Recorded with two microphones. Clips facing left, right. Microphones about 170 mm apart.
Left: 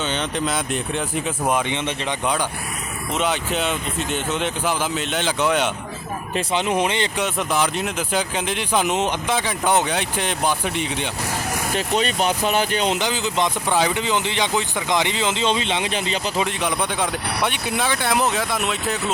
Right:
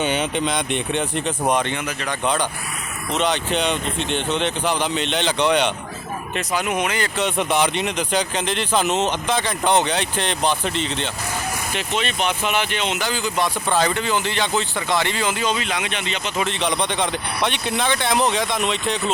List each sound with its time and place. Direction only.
0.0 s speech: 10° right (ahead or behind)
0.3 s speech: centre (ahead or behind)
1.7 s speech: 20° left (ahead or behind)
2.2 s speech: 10° left (ahead or behind)
6.3 s speech: 25° left (ahead or behind)
7.2 s speech: centre (ahead or behind)
11.7 s speech: 40° left (ahead or behind)
13.0 s speech: 20° left (ahead or behind); by 16.3 s 35° left (ahead or behind)
16.4 s speech: 10° left (ahead or behind)